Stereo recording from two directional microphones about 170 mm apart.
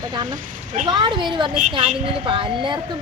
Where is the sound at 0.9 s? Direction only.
30° right (ahead or behind).